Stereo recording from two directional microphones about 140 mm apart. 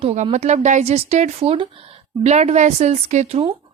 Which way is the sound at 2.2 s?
55° right (ahead or behind).